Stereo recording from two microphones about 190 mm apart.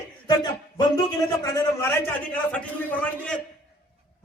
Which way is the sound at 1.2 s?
15° left (ahead or behind).